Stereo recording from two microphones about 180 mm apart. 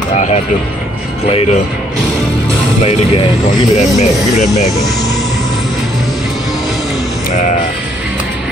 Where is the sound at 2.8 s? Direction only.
35° left (ahead or behind).